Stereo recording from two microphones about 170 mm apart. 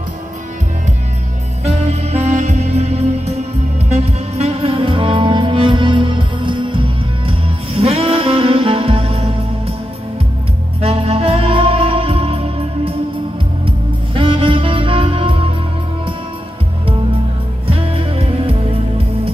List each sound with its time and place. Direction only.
1.6 s music: 40° right (ahead or behind)
10.8 s music: 35° right (ahead or behind)
17.6 s music: 35° right (ahead or behind)